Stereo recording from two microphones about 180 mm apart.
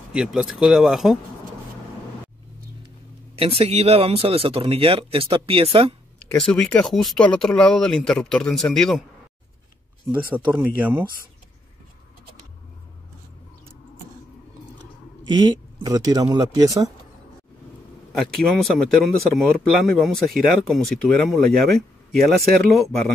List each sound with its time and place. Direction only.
0.1 s speech: 5° right (ahead or behind)
3.3 s speech: 35° right (ahead or behind)
6.1 s speech: 5° left (ahead or behind)
10.1 s speech: 10° right (ahead or behind)
15.2 s speech: 25° right (ahead or behind)
18.2 s speech: centre (ahead or behind)